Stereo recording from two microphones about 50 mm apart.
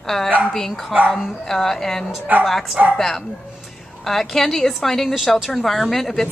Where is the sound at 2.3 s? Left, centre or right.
Right.